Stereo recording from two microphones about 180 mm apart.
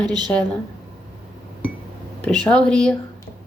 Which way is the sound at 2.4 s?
5° left (ahead or behind).